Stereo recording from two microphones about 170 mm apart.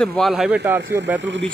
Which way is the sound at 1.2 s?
90° right.